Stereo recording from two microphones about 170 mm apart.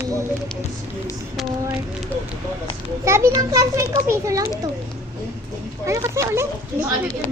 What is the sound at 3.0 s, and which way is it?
A child's voice, 15° right (ahead or behind).